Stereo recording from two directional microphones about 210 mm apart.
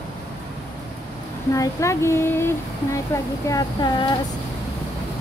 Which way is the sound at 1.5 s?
15° left (ahead or behind).